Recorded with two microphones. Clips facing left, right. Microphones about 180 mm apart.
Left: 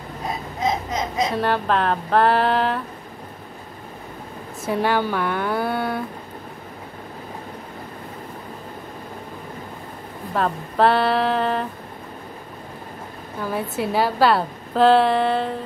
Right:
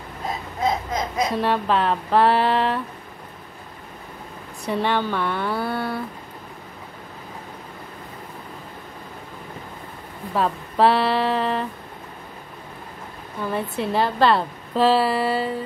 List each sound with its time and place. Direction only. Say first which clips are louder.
0.6 s baby cry: even; 20° left (ahead or behind)
1.3 s a woman's voice: right 1 dB; centre (ahead or behind)
4.7 s a woman's voice: left 1 dB; 10° left (ahead or behind)
10.3 s a woman's voice: even; centre (ahead or behind)
13.5 s a woman's voice: even; 5° left (ahead or behind)